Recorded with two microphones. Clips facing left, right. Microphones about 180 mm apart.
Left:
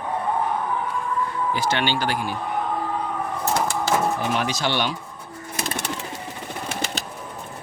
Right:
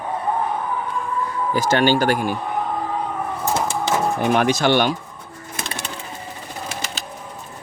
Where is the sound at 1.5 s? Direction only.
45° right (ahead or behind).